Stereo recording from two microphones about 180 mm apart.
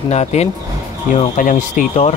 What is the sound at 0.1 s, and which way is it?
A man's voice, 35° left (ahead or behind).